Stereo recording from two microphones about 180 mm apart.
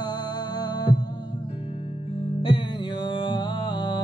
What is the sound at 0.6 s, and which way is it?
Heart sounds, 25° left (ahead or behind).